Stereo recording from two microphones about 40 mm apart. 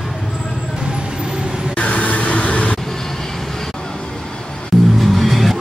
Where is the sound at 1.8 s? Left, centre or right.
Left.